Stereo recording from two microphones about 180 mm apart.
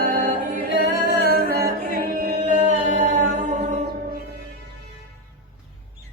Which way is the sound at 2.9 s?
40° right (ahead or behind).